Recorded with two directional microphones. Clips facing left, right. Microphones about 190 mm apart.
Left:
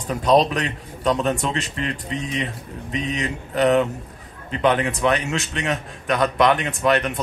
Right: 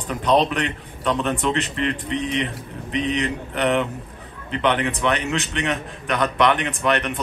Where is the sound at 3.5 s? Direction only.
40° left (ahead or behind).